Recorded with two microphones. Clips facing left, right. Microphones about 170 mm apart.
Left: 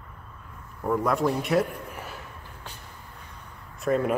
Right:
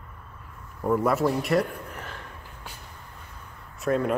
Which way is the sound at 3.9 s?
Centre (ahead or behind).